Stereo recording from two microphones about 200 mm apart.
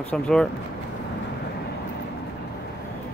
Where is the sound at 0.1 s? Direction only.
5° left (ahead or behind).